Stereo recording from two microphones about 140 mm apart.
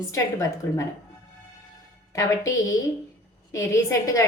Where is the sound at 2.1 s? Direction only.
20° left (ahead or behind).